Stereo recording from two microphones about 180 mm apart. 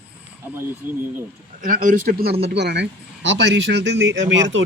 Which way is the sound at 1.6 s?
45° right (ahead or behind).